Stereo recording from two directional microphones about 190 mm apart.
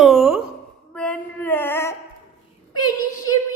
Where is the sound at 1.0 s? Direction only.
5° left (ahead or behind).